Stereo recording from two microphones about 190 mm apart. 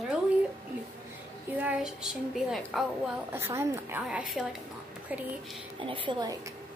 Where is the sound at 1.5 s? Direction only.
5° right (ahead or behind).